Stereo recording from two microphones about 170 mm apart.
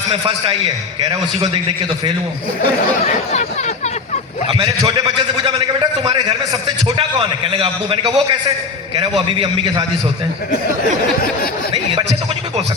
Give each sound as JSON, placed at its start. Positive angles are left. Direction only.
{"t": 0.1, "sound": "a man's voice", "side_deg": -40}
{"t": 4.4, "sound": "a man's voice", "side_deg": -35}